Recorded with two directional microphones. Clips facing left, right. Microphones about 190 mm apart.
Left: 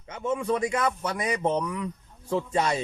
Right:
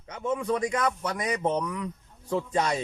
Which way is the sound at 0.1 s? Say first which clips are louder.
Left 1 dB; 5° left (ahead or behind).